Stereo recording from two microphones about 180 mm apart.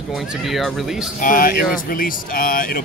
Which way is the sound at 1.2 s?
50° left (ahead or behind).